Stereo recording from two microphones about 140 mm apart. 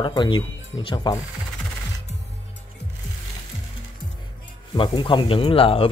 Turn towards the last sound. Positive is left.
turn(degrees=40)  # may be behind; listen again after turning